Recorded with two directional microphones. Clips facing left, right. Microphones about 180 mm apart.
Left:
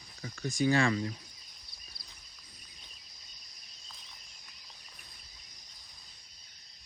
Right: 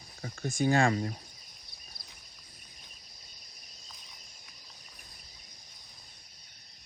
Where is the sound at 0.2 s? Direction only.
50° right (ahead or behind).